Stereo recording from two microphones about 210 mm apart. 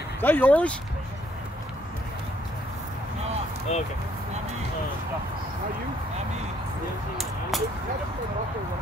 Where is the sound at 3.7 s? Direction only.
30° left (ahead or behind).